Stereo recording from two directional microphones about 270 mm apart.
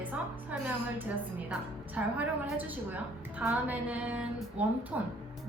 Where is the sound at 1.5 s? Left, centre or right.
Centre.